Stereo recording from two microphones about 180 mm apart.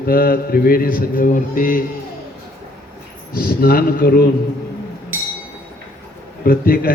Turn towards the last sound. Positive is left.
turn(degrees=55)  # may be behind; listen again after turning